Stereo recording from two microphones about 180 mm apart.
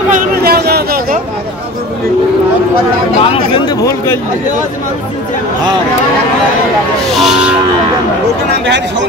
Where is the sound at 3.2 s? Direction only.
30° left (ahead or behind).